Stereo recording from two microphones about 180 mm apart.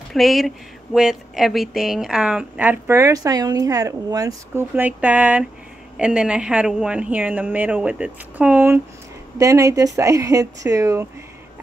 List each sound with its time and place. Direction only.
0.1 s speech: centre (ahead or behind); by 11.1 s 15° right (ahead or behind)